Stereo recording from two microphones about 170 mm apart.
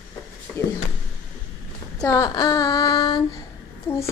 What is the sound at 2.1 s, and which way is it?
Female singing, 20° left (ahead or behind).